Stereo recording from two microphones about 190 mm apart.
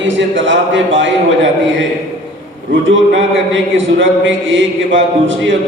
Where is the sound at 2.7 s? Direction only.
80° right.